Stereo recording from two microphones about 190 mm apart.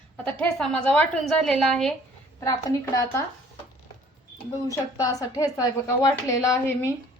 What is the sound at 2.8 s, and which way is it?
Speech, 15° left (ahead or behind).